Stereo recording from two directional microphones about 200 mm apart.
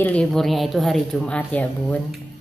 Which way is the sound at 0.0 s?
5° left (ahead or behind).